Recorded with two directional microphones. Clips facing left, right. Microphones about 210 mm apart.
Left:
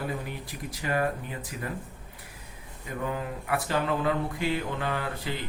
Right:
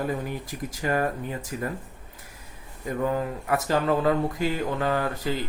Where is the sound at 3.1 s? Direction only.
40° right (ahead or behind).